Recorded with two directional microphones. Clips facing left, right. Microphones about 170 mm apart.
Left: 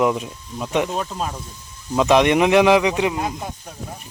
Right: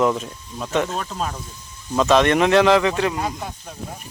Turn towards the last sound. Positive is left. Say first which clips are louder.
# left 1 dB
turn(degrees=15)  # may be behind; listen again after turning